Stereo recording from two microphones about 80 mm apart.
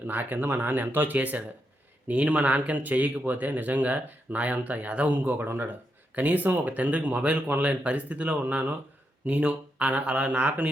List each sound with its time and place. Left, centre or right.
0.1 s speech: right